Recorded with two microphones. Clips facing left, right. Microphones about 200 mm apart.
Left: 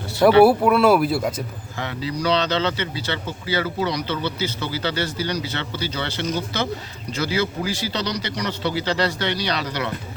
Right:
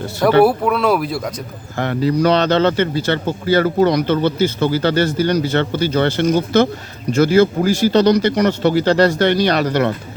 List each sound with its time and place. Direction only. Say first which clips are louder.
0.4 s speech: even; 5° left (ahead or behind)
1.7 s speech: right 11 dB; 55° right (ahead or behind)